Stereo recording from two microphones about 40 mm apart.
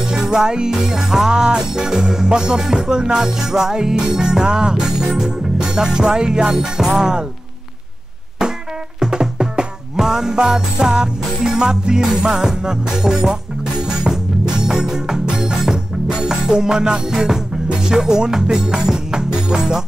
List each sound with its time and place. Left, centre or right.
0.0 s music: centre
8.4 s music: centre